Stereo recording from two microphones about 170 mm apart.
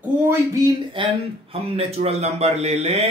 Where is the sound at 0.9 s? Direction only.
30° right (ahead or behind).